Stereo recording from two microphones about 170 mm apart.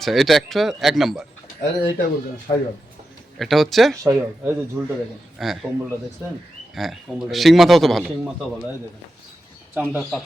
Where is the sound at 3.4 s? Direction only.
Centre (ahead or behind).